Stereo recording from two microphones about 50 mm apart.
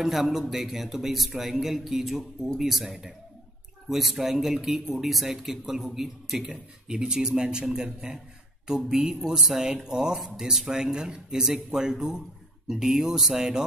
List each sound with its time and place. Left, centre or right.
0.0 s speech: centre